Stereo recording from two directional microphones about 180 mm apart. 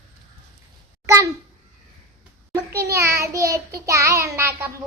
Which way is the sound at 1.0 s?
15° right (ahead or behind).